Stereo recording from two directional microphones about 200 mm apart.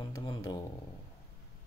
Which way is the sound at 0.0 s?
20° left (ahead or behind).